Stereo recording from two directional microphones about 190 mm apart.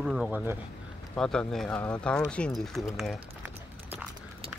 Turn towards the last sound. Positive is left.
turn(degrees=-5)  # may be behind; listen again after turning